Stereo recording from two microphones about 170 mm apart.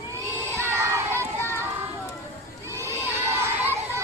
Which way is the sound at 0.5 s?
15° right (ahead or behind).